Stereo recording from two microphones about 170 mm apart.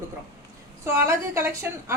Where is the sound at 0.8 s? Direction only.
15° right (ahead or behind).